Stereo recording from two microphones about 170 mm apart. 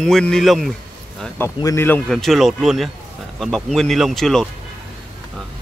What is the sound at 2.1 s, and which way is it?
Speech, centre (ahead or behind).